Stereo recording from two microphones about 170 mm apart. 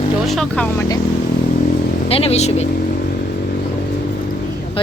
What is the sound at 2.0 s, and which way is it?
Speech, 35° left (ahead or behind).